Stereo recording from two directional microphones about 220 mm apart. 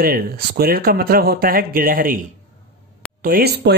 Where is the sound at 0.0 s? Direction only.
45° right (ahead or behind).